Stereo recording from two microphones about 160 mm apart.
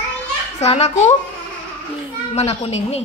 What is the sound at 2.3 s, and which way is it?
Speech, 40° left (ahead or behind).